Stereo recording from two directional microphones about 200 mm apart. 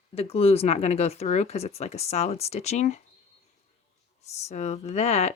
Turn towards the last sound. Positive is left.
turn(degrees=30)  # may be behind; listen again after turning